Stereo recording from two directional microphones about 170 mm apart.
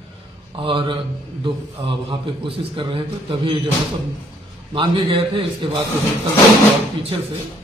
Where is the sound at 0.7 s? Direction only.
30° right (ahead or behind).